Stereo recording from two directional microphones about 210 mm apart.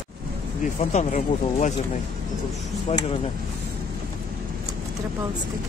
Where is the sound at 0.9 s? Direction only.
35° left (ahead or behind).